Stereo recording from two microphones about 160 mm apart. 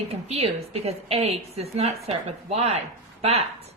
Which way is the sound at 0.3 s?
40° right (ahead or behind).